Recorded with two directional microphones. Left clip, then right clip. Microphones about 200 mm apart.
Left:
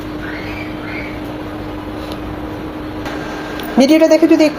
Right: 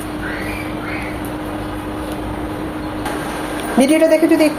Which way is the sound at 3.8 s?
20° left (ahead or behind).